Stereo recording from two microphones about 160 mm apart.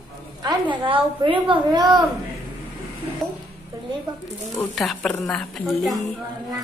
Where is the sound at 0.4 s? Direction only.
30° right (ahead or behind).